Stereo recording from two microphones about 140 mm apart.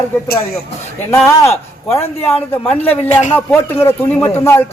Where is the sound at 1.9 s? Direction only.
20° left (ahead or behind).